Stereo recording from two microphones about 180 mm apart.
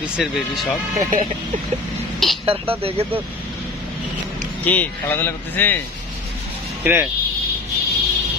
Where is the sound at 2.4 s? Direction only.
30° right (ahead or behind).